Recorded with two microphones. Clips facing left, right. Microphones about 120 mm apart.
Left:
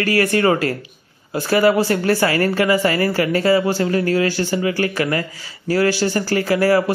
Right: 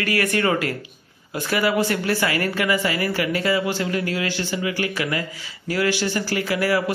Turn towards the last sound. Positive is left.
turn(degrees=40)  # may be behind; listen again after turning